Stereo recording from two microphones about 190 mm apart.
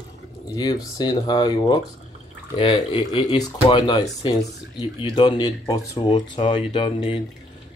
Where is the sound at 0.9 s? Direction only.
20° left (ahead or behind).